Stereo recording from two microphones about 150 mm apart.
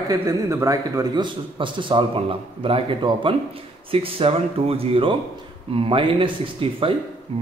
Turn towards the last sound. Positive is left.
turn(degrees=-40)  # may be behind; listen again after turning